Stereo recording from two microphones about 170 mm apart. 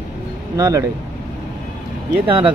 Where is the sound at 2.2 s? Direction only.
30° right (ahead or behind).